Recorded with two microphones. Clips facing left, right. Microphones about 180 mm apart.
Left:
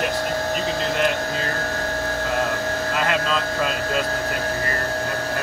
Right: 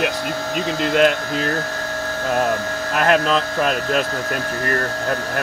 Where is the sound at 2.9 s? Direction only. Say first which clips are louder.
Right 8 dB; 65° right (ahead or behind).